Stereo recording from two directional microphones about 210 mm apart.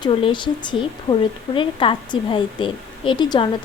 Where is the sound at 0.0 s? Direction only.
25° left (ahead or behind).